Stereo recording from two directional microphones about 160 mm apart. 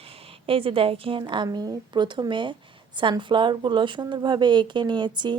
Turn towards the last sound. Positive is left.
turn(degrees=-30)  # may be behind; listen again after turning